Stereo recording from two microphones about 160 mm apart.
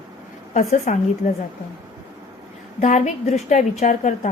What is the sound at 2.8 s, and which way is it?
A woman's voice, 50° left (ahead or behind).